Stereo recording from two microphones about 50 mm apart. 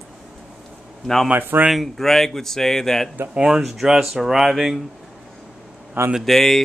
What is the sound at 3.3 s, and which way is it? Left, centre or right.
Speech, centre.